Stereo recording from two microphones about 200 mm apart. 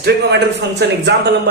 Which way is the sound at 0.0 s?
55° right (ahead or behind).